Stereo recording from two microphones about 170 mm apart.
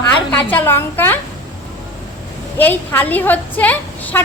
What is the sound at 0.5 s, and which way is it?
Speech, 10° left (ahead or behind).